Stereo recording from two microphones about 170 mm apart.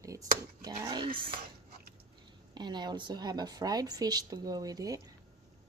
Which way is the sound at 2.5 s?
25° right (ahead or behind).